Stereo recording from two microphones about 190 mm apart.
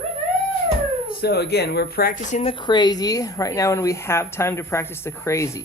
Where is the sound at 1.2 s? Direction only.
55° left (ahead or behind); by 2.5 s 40° left (ahead or behind).